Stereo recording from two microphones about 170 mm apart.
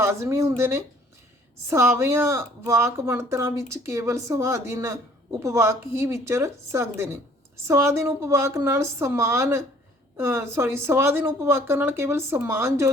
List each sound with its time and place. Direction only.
0.0 s speech: 15° right (ahead or behind)